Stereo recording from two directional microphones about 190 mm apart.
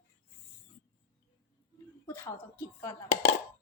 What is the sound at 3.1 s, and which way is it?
Speech, 40° left (ahead or behind).